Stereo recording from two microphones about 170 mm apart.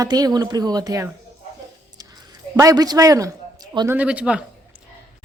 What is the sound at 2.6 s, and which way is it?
Speech, 20° right (ahead or behind).